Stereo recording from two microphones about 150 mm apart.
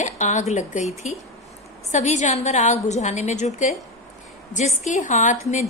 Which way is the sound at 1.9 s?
50° left (ahead or behind).